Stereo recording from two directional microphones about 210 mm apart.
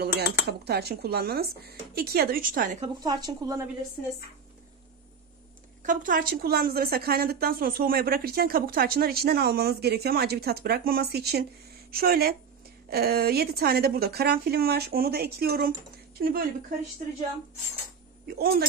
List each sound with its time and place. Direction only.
0.0 s a woman's voice: 50° right (ahead or behind)
3.0 s speech: 20° right (ahead or behind)
5.9 s a woman's voice: 40° right (ahead or behind)
18.2 s a woman's voice: 50° right (ahead or behind)